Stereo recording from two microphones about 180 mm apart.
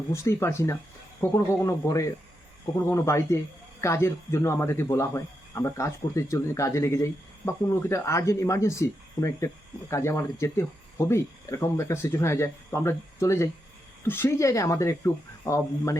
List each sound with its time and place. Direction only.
0.1 s speech: 15° left (ahead or behind)